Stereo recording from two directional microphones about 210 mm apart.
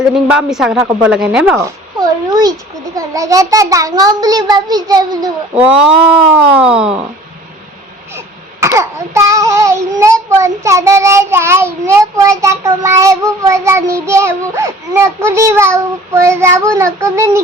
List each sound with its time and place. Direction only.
0.5 s speech: centre (ahead or behind)
2.0 s a child's voice: 20° right (ahead or behind)
5.6 s speech: 5° right (ahead or behind)
8.6 s a child's voice: 15° right (ahead or behind)